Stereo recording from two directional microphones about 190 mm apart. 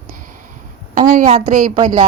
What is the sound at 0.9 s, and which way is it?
A woman's voice, 45° right (ahead or behind).